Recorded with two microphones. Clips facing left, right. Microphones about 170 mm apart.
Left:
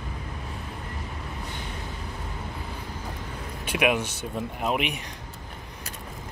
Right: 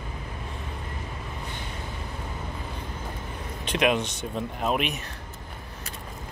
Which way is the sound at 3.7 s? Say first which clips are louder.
Even; 10° left (ahead or behind).